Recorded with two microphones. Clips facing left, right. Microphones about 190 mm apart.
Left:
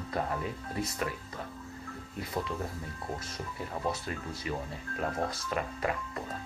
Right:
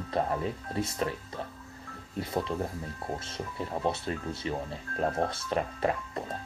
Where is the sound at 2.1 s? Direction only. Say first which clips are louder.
Right 4 dB; 30° right (ahead or behind).